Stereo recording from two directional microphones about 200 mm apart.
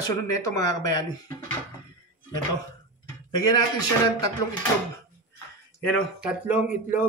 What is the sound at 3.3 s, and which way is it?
Speech, 20° left (ahead or behind).